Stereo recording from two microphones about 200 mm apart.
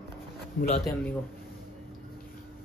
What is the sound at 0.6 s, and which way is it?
Speech, 55° left (ahead or behind).